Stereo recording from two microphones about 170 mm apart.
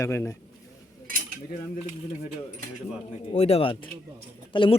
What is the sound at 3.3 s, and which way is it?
Speech, 35° left (ahead or behind).